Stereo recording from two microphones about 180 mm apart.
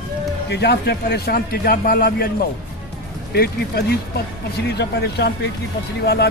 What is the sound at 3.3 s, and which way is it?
Speech, 60° left (ahead or behind).